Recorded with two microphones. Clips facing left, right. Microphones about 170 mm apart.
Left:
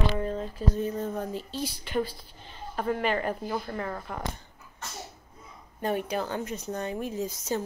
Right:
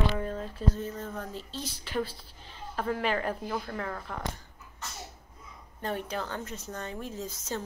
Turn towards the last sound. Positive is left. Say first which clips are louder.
# left 5 dB
turn(degrees=10)  # may be behind; listen again after turning